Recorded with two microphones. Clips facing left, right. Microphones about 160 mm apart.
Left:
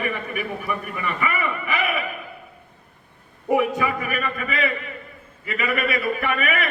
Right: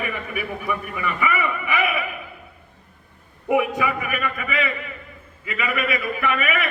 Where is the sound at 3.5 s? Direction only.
35° left (ahead or behind).